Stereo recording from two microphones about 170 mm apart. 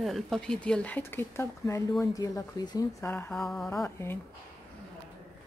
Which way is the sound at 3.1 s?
15° left (ahead or behind).